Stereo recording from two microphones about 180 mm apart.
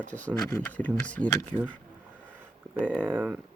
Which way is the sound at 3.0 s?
10° right (ahead or behind).